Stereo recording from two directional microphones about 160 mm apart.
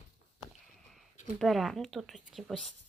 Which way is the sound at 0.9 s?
Centre (ahead or behind).